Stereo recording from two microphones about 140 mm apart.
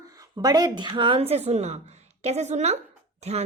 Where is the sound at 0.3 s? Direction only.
25° right (ahead or behind).